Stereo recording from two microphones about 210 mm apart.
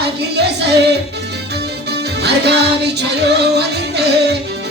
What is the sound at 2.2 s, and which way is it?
Music, 50° right (ahead or behind).